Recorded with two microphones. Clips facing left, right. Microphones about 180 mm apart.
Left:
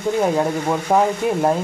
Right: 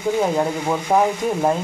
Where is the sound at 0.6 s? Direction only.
5° right (ahead or behind).